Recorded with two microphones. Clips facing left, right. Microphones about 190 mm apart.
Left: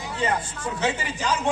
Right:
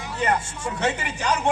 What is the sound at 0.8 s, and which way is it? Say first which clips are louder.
Speech: right 1 dB; 60° right (ahead or behind).